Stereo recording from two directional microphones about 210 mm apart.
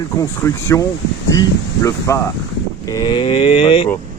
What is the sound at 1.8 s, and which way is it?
Speech, 15° left (ahead or behind).